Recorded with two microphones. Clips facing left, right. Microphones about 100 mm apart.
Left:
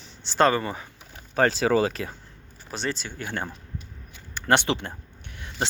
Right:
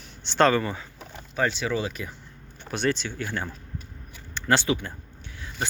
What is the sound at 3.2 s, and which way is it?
Speech, 25° left (ahead or behind).